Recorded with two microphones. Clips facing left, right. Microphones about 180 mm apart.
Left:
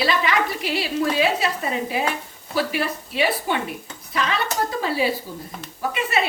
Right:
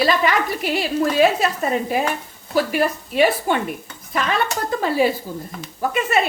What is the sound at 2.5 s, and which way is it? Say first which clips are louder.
A woman's voice: right 4 dB; 45° right (ahead or behind).